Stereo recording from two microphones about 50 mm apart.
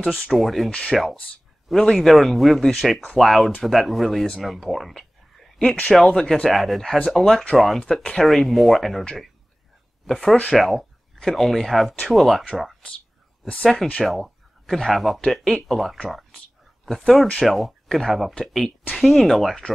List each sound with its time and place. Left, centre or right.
0.2 s speech: centre
0.7 s speech: left
1.7 s speech: centre
5.6 s speech: centre
10.0 s speech: centre
10.3 s speech: left
10.6 s speech: centre
13.9 s a sound: centre
14.9 s speech: centre